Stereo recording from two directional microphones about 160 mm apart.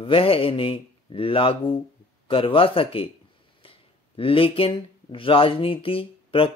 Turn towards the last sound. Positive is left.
turn(degrees=35)  # may be behind; listen again after turning